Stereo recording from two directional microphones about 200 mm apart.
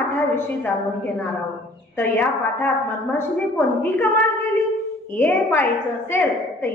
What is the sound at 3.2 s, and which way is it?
Speech, 10° left (ahead or behind).